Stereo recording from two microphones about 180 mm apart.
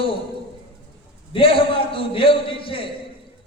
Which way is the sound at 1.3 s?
30° left (ahead or behind).